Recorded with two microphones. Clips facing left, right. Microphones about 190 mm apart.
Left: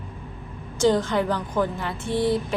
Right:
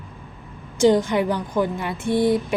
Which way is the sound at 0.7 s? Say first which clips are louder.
Right 3 dB; 15° right (ahead or behind).